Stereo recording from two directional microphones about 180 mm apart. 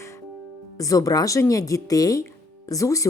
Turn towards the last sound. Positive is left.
turn(degrees=20)  # may be behind; listen again after turning